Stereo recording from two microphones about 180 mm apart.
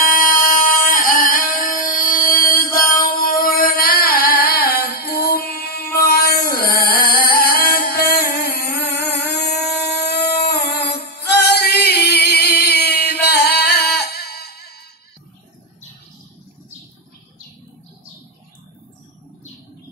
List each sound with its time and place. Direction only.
0.0 s singing: 50° left (ahead or behind)
6.1 s music: 55° left (ahead or behind)